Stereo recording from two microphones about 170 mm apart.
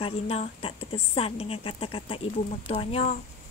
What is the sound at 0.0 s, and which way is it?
A woman's voice, 35° left (ahead or behind).